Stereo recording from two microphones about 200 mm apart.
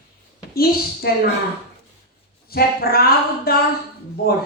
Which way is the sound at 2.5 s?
50° left (ahead or behind).